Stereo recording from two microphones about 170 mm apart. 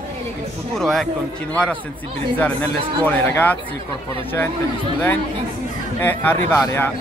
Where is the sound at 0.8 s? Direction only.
Centre (ahead or behind).